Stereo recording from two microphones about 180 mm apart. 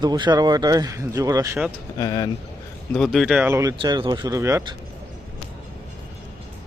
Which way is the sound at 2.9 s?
Centre (ahead or behind).